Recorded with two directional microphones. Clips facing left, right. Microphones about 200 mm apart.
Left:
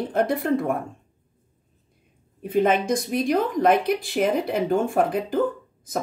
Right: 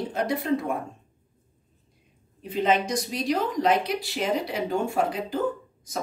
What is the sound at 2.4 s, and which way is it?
Speech, 50° left (ahead or behind).